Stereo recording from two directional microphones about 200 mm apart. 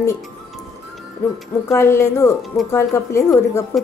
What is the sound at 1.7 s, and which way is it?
A woman's voice, 15° left (ahead or behind).